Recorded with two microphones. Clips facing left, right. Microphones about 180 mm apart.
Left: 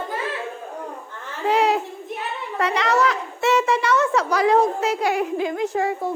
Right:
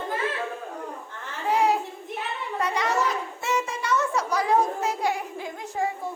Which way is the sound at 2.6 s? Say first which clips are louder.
Left 5 dB; 75° left (ahead or behind).